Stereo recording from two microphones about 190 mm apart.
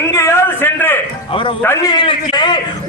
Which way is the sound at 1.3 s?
25° left (ahead or behind).